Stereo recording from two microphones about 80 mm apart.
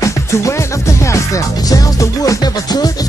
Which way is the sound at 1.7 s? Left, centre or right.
Left.